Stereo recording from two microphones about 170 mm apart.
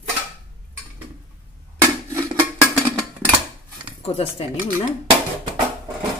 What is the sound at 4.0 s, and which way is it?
Speech, 35° left (ahead or behind).